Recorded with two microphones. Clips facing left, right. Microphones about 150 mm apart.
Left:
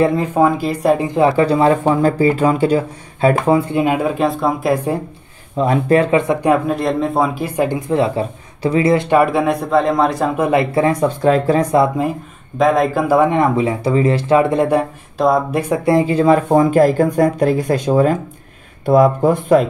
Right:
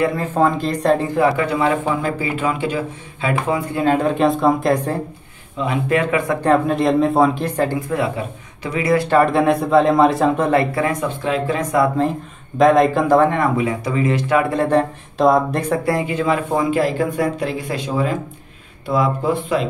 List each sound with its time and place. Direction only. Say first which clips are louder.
0.0 s speech: left 4 dB; 25° left (ahead or behind)
0.3 s a man's voice: left 3 dB; 10° left (ahead or behind)
1.3 s speech: left 5 dB; 35° left (ahead or behind)
3.7 s speech: left 1 dB; 10° left (ahead or behind)
5.6 s speech: left 5 dB; 40° left (ahead or behind)
6.7 s a man's voice: right 2 dB; centre (ahead or behind); by 9.2 s 20° left (ahead or behind)
9.2 s a man's voice: even; centre (ahead or behind); by 11.8 s 35° left (ahead or behind)
12.5 s speech: right 1 dB; centre (ahead or behind)
13.3 s speech: left 3 dB; 25° left (ahead or behind)
14.5 s a man's voice: left 2 dB; 15° left (ahead or behind)
15.8 s speech: left 6 dB; 25° left (ahead or behind); by 19.7 s 45° left (ahead or behind)